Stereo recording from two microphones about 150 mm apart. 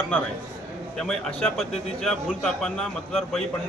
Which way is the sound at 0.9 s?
5° left (ahead or behind).